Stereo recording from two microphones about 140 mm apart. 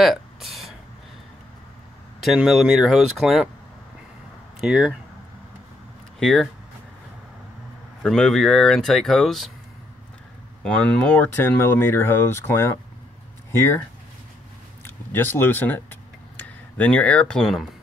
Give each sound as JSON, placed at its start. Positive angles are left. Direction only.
{"t": 0.0, "sound": "a sound", "side_deg": 0}
{"t": 2.1, "sound": "speech", "side_deg": 0}
{"t": 4.6, "sound": "speech", "side_deg": -5}
{"t": 6.1, "sound": "speech", "side_deg": 5}
{"t": 8.0, "sound": "speech", "side_deg": 5}
{"t": 10.6, "sound": "speech", "side_deg": 10}
{"t": 14.9, "sound": "a sound", "side_deg": 15}